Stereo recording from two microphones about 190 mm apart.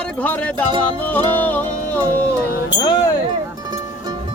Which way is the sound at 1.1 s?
10° left (ahead or behind).